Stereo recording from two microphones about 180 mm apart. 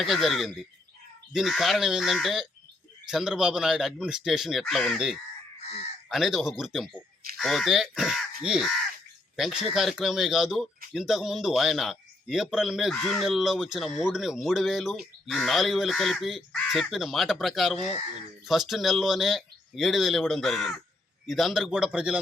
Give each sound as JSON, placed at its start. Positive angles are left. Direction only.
{"t": 0.0, "sound": "speech", "side_deg": 0}
{"t": 17.7, "sound": "speech", "side_deg": 40}
{"t": 18.4, "sound": "speech", "side_deg": 0}